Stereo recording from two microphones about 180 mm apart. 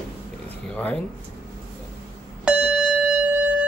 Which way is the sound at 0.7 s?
10° left (ahead or behind).